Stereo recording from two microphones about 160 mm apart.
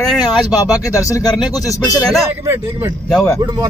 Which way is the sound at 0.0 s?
5° left (ahead or behind).